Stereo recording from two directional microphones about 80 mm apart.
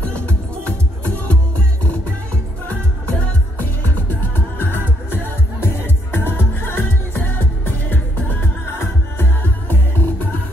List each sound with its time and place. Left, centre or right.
0.1 s music: centre
3.5 s music: left